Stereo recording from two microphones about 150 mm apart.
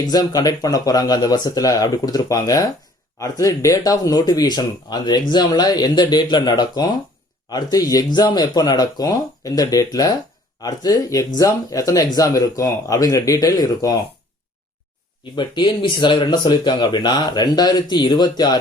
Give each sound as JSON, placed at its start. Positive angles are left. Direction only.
{"t": 0.1, "sound": "speech", "side_deg": 25}
{"t": 15.4, "sound": "speech", "side_deg": 30}